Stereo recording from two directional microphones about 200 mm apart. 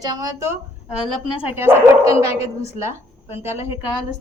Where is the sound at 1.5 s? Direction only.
10° right (ahead or behind).